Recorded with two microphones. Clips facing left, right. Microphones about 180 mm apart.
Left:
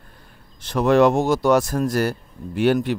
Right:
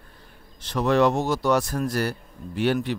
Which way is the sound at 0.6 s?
50° left (ahead or behind).